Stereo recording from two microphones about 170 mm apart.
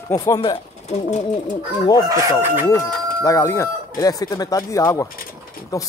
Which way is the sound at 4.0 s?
20° left (ahead or behind).